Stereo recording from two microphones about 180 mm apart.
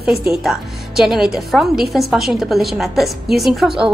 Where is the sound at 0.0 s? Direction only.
Centre (ahead or behind).